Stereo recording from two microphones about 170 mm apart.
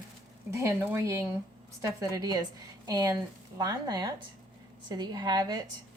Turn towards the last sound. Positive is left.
turn(degrees=-25)  # may be behind; listen again after turning